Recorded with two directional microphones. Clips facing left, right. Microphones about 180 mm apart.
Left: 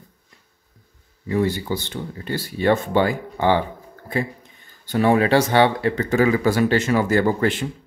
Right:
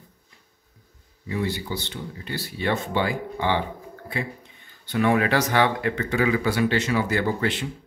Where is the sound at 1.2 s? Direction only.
45° left (ahead or behind).